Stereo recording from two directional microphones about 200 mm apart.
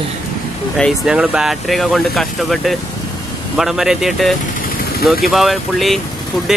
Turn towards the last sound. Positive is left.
turn(degrees=0)  # may be behind; listen again after turning